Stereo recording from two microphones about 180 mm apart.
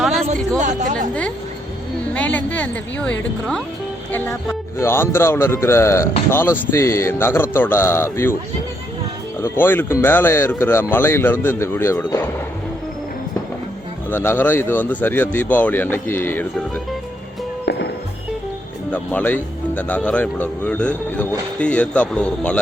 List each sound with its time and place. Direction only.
0.6 s speech: 45° right (ahead or behind)
2.1 s speech: 10° left (ahead or behind)
9.4 s speech: 10° left (ahead or behind)
14.1 s speech: 10° left (ahead or behind)
17.7 s music: 65° left (ahead or behind)
18.9 s speech: 10° left (ahead or behind)